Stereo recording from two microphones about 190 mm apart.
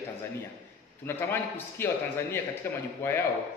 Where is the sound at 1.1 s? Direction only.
10° left (ahead or behind).